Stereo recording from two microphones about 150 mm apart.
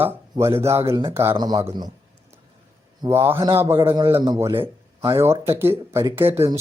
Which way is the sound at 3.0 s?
15° right (ahead or behind).